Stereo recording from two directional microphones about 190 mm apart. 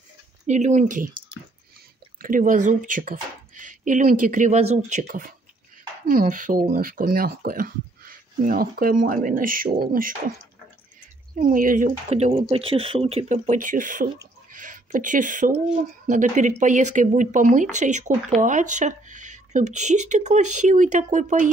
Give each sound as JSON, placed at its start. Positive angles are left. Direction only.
{"t": 0.5, "sound": "speech", "side_deg": -40}
{"t": 2.2, "sound": "speech", "side_deg": -45}
{"t": 5.0, "sound": "speech", "side_deg": -50}
{"t": 11.3, "sound": "speech", "side_deg": -45}